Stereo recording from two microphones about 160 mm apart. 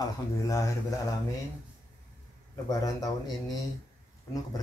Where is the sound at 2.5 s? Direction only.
20° left (ahead or behind).